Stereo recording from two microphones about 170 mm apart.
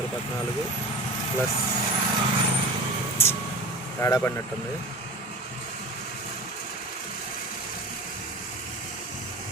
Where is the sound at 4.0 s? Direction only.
15° left (ahead or behind).